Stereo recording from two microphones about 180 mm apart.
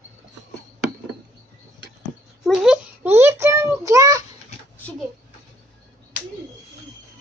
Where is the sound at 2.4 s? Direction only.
5° right (ahead or behind); by 4.2 s 20° right (ahead or behind).